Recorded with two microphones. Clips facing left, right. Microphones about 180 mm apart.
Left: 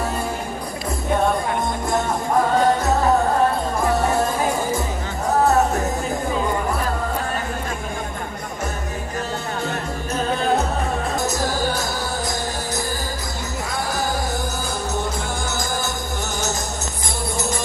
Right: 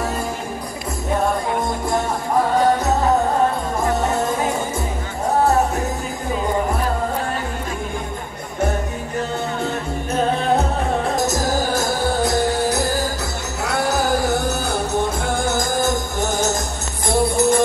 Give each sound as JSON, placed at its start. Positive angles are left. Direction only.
{"t": 11.2, "sound": "music", "side_deg": -45}
{"t": 13.7, "sound": "music", "side_deg": -75}
{"t": 15.2, "sound": "music", "side_deg": -55}
{"t": 17.1, "sound": "music", "side_deg": -60}